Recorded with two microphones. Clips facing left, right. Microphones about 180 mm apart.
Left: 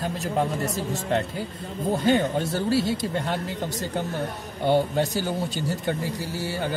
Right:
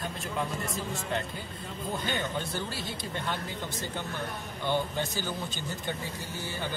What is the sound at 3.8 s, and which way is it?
Speech, 40° left (ahead or behind).